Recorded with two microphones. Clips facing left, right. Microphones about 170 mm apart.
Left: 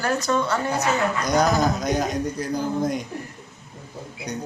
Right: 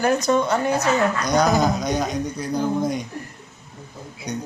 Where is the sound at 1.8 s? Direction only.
5° left (ahead or behind).